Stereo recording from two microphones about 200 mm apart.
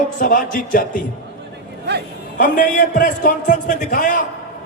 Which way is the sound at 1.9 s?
55° right (ahead or behind).